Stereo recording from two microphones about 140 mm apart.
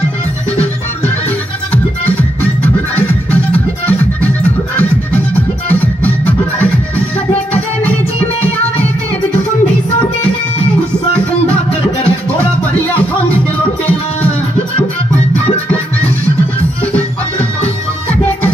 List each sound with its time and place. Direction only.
3.3 s music: 10° left (ahead or behind)
15.4 s music: 45° left (ahead or behind)
16.8 s music: 10° left (ahead or behind)